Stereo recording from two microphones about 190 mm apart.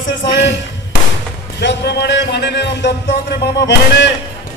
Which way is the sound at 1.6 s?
65° left (ahead or behind).